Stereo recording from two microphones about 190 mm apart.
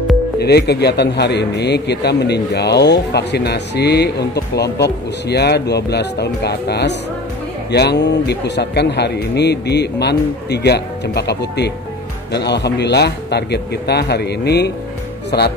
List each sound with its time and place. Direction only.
0.4 s speech: 60° left (ahead or behind)